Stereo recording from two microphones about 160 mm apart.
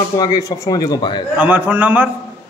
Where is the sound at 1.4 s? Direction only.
10° right (ahead or behind).